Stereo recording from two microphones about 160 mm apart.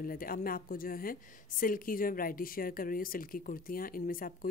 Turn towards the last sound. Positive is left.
turn(degrees=60)  # may be behind; listen again after turning